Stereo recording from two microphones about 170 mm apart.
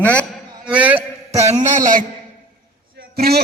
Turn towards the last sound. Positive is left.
turn(degrees=-65)  # may be behind; listen again after turning